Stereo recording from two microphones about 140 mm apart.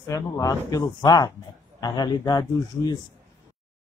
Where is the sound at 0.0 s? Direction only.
25° left (ahead or behind).